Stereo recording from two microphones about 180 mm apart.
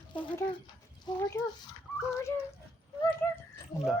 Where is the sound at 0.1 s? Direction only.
25° left (ahead or behind).